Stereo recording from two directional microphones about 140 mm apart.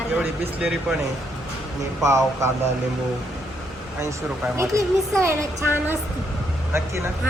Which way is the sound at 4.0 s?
20° right (ahead or behind).